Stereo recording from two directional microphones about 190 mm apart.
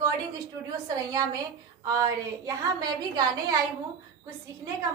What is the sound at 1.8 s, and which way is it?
A woman's voice, 15° right (ahead or behind).